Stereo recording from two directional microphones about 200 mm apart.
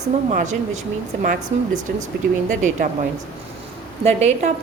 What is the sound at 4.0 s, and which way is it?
Speech, 35° right (ahead or behind).